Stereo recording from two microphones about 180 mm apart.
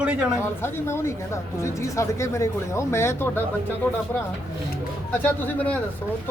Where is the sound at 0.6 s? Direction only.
15° left (ahead or behind).